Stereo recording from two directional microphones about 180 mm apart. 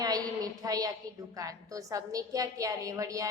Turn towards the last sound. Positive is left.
turn(degrees=-20)  # may be behind; listen again after turning